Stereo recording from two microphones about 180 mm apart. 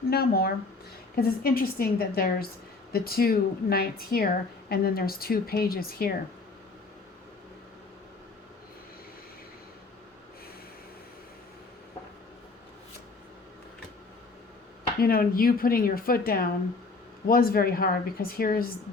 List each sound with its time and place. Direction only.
0.1 s speech: 60° left (ahead or behind)
15.0 s speech: 55° left (ahead or behind)